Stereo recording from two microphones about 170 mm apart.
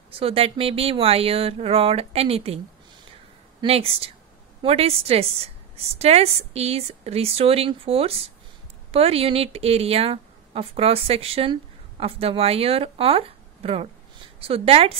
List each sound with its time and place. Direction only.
0.1 s a woman's voice: 35° right (ahead or behind)
3.6 s a woman's voice: 35° right (ahead or behind)